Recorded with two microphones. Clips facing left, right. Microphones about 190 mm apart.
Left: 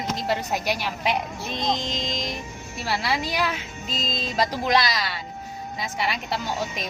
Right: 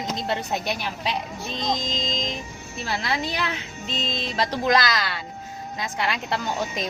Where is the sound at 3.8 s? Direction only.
10° left (ahead or behind).